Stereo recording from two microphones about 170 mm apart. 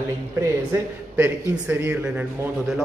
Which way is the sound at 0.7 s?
10° right (ahead or behind).